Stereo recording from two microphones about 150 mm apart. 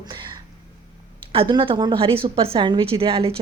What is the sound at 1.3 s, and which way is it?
Speech, 35° right (ahead or behind).